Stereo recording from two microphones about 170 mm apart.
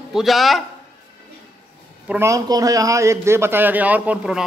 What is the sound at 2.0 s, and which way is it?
A man's voice, 15° right (ahead or behind).